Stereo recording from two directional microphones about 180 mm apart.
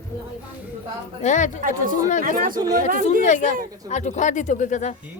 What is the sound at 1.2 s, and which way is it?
Speech, 40° left (ahead or behind).